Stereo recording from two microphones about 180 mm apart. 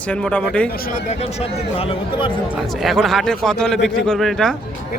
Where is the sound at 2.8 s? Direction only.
Centre (ahead or behind).